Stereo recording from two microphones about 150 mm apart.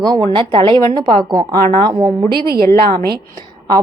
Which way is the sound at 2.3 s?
90° right.